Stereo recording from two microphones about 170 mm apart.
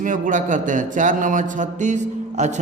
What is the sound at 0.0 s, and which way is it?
A man's voice, 50° right (ahead or behind).